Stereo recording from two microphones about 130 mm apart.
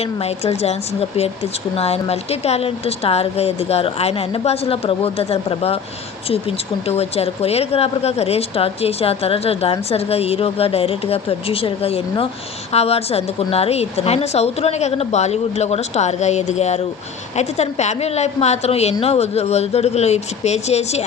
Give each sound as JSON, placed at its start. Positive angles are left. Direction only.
{"t": 0.0, "sound": "speech", "side_deg": 50}
{"t": 6.8, "sound": "a woman's voice", "side_deg": 50}